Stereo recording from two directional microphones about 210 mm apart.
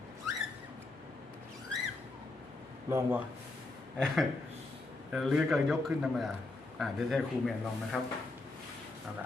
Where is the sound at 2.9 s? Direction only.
10° right (ahead or behind).